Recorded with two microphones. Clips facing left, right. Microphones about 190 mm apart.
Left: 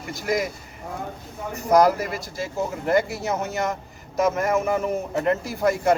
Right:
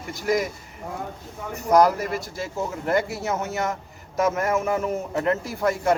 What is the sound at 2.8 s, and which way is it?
Speech, centre (ahead or behind).